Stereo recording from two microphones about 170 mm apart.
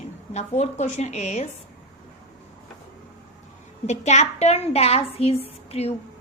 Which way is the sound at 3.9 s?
40° left (ahead or behind).